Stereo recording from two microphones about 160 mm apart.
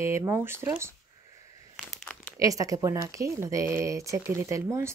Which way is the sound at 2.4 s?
20° right (ahead or behind).